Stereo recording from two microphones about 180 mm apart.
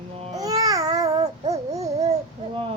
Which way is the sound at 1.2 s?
35° right (ahead or behind).